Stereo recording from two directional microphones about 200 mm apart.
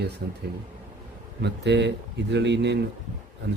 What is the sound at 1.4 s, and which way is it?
Speech, 60° right (ahead or behind).